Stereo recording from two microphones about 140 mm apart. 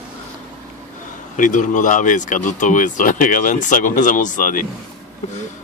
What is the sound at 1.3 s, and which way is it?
Speech, 65° left (ahead or behind).